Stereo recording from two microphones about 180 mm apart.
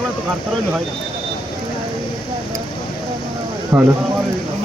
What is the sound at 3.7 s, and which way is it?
Speech, 15° right (ahead or behind).